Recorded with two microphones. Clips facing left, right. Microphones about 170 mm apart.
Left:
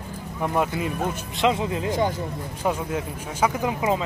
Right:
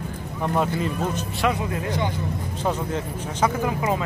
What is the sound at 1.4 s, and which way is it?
Speech, 20° left (ahead or behind).